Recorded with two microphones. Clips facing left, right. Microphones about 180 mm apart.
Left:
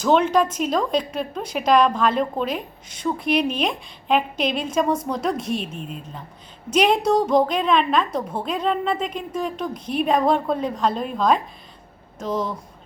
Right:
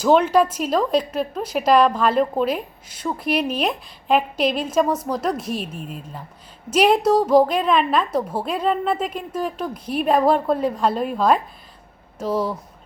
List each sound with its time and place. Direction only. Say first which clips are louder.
0.0 s a woman's voice: right 2 dB; 5° right (ahead or behind)